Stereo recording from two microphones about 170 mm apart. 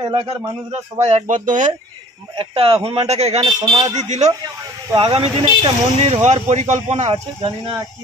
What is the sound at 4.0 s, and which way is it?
Speech, 45° right (ahead or behind).